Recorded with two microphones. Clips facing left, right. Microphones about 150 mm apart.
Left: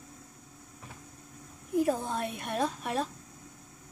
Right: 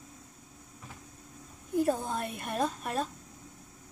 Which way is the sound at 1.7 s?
Centre (ahead or behind).